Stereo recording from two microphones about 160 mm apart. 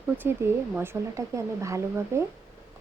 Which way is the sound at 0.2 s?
15° right (ahead or behind).